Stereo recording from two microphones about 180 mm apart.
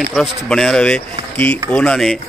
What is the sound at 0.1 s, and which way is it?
Speech, centre (ahead or behind).